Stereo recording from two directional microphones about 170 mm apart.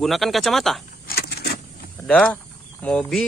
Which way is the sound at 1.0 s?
65° left (ahead or behind).